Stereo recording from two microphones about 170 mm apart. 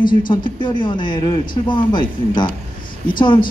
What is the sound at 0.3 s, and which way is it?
A man's voice, 30° left (ahead or behind).